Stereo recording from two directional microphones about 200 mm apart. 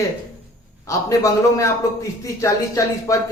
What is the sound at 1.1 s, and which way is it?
Speech, 15° left (ahead or behind).